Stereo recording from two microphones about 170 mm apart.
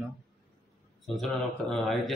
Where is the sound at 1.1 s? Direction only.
Centre (ahead or behind).